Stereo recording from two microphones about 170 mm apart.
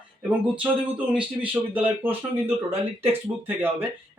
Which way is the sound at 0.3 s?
10° right (ahead or behind).